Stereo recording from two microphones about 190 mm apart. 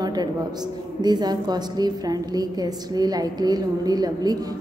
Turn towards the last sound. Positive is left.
turn(degrees=-20)  # may be behind; listen again after turning